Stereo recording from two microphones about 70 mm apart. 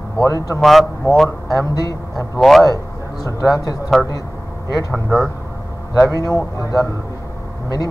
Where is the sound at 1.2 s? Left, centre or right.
Left.